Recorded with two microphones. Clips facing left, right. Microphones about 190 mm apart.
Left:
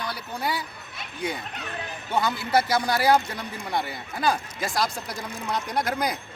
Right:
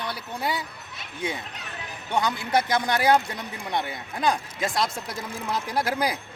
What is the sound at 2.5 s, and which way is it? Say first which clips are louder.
Speech: left 1 dB; 5° left (ahead or behind).